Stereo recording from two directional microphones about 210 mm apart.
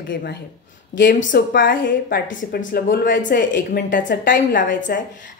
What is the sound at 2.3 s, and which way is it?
A woman's voice, 40° left (ahead or behind).